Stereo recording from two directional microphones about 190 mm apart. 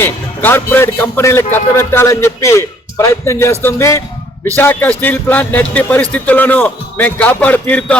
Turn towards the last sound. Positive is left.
turn(degrees=10)  # may be behind; listen again after turning